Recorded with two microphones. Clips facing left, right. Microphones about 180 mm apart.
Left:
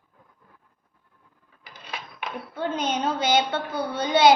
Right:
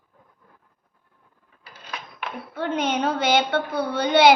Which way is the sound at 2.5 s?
65° right (ahead or behind).